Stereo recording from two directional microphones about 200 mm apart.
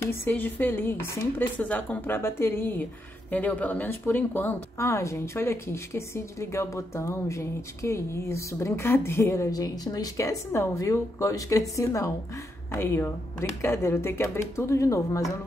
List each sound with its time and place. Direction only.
0.0 s speech: 10° left (ahead or behind)